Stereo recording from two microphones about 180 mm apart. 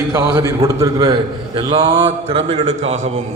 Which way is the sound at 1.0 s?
30° right (ahead or behind).